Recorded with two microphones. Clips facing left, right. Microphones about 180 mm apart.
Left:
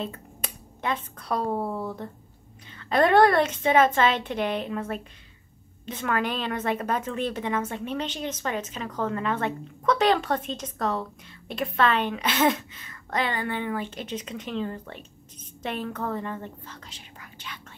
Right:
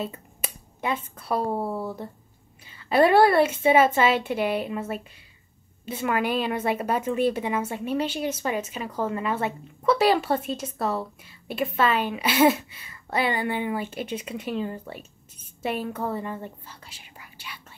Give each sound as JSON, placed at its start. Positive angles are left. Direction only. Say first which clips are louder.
{"t": 0.0, "sound": "a woman's voice", "louder": "right 1 dB", "side_deg": -5}